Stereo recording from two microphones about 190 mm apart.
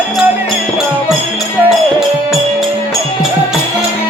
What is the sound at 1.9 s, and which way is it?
Music, centre (ahead or behind).